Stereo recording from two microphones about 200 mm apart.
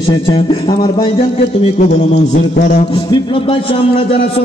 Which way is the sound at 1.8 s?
40° left (ahead or behind).